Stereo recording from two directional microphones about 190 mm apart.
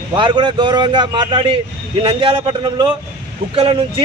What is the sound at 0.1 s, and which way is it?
Speech, 25° right (ahead or behind).